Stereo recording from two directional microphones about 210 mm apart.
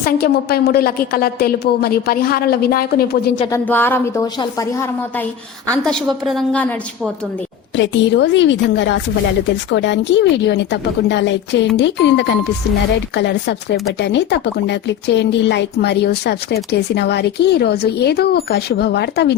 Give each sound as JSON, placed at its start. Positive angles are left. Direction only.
{"t": 0.0, "sound": "speech", "side_deg": 45}
{"t": 3.5, "sound": "a woman's voice", "side_deg": 10}
{"t": 5.7, "sound": "a woman's voice", "side_deg": 5}
{"t": 7.8, "sound": "a woman's voice", "side_deg": 55}